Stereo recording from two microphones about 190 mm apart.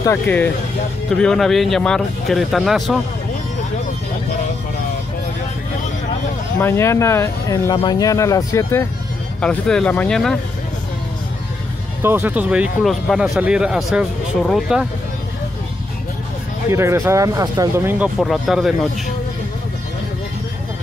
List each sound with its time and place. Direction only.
0.0 s speech: 10° left (ahead or behind)
6.6 s speech: 15° left (ahead or behind)
9.4 s speech: 5° left (ahead or behind)
12.0 s speech: 10° right (ahead or behind)
16.7 s speech: 15° right (ahead or behind)